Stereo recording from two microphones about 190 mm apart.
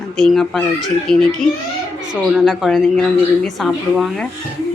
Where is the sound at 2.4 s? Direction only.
Centre (ahead or behind).